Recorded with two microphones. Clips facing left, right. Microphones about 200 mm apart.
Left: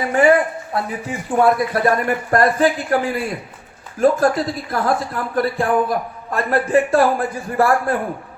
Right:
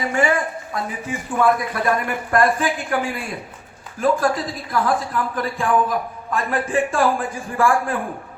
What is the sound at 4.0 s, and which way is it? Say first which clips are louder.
A man's voice: left 4 dB; 40° left (ahead or behind).